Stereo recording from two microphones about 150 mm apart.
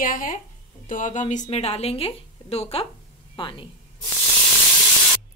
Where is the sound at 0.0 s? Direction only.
65° left (ahead or behind); by 3.6 s 35° left (ahead or behind).